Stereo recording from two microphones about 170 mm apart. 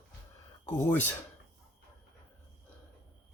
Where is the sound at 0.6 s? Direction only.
15° left (ahead or behind).